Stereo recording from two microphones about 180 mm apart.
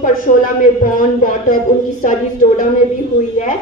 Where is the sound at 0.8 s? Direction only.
50° left (ahead or behind).